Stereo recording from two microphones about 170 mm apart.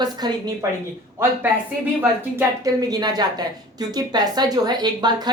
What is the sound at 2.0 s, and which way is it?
A woman's voice, 15° right (ahead or behind).